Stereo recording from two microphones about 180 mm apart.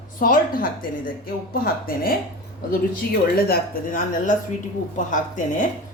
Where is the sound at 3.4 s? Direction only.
55° left (ahead or behind).